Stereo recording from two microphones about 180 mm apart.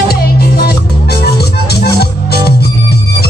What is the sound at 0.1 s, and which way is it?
Music, 60° left (ahead or behind).